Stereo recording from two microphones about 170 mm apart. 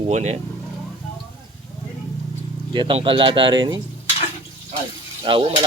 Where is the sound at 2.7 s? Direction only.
30° right (ahead or behind).